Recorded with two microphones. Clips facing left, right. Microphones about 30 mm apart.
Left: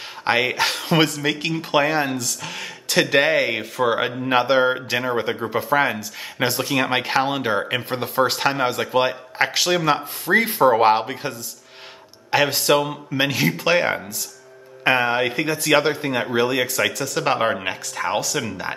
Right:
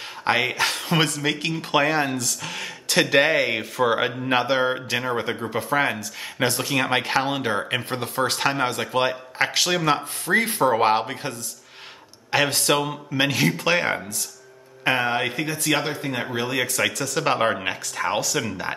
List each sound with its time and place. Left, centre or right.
0.3 s speech: centre
1.0 s speech: centre
15.6 s speech: left
16.1 s speech: left
16.4 s speech: centre